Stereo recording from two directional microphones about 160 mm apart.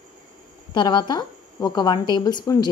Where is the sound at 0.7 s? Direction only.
30° left (ahead or behind).